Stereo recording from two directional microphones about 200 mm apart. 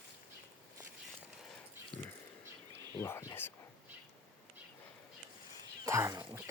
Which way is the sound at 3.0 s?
15° left (ahead or behind).